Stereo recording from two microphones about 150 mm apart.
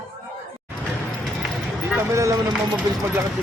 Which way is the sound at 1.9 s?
20° right (ahead or behind).